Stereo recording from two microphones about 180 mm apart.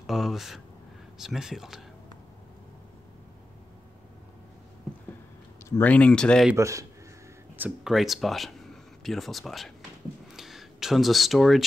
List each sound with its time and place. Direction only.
0.0 s speech: centre (ahead or behind)
5.7 s speech: 10° left (ahead or behind)
6.5 s a man's voice: 15° right (ahead or behind)
7.5 s speech: 5° right (ahead or behind)